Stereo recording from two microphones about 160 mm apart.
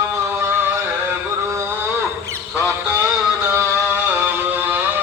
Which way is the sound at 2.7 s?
15° right (ahead or behind).